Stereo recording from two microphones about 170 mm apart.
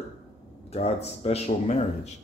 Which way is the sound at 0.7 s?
35° left (ahead or behind).